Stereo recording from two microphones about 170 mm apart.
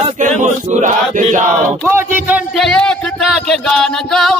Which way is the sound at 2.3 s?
Centre (ahead or behind).